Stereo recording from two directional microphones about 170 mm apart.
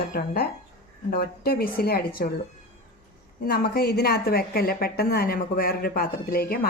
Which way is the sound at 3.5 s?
70° left (ahead or behind).